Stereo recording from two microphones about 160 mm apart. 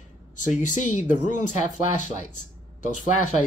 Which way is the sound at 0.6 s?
50° left (ahead or behind).